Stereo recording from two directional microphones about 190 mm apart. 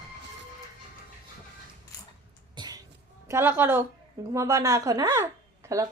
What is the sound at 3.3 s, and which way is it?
Speech, 10° right (ahead or behind).